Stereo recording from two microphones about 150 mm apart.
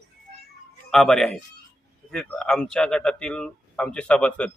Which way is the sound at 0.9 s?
5° left (ahead or behind).